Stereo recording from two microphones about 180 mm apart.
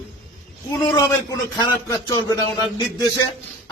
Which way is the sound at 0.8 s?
15° left (ahead or behind).